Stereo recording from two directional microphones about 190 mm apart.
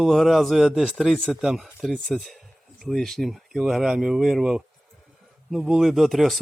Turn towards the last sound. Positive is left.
turn(degrees=0)  # may be behind; listen again after turning